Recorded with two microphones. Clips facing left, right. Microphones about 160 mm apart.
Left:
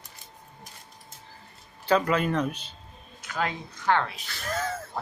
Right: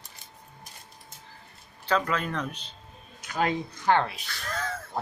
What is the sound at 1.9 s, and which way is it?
Speech, 10° left (ahead or behind).